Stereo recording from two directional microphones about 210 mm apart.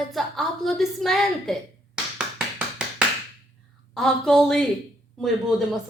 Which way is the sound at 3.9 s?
Centre (ahead or behind).